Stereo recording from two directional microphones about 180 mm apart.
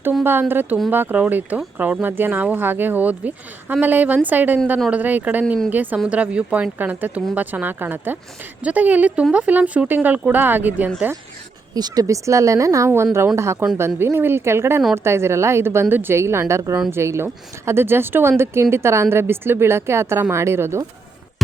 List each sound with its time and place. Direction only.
0.0 s speech: 10° right (ahead or behind)
11.7 s speech: 20° right (ahead or behind)